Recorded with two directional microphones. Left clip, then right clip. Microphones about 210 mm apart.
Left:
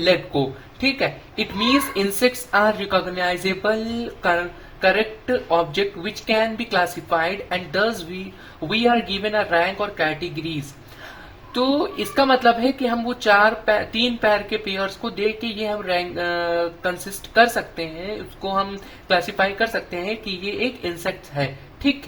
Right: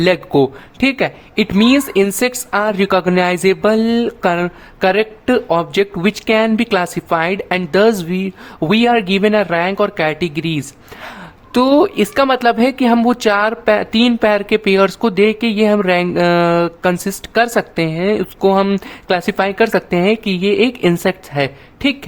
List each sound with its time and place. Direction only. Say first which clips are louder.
0.0 s speech: right 6 dB; 40° right (ahead or behind)
11.5 s speech: right 9 dB; 45° right (ahead or behind)